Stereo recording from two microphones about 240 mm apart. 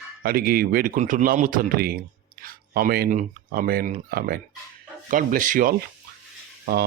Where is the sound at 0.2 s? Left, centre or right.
Right.